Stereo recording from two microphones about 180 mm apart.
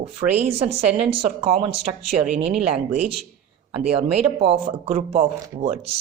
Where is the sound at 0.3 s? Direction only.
35° right (ahead or behind).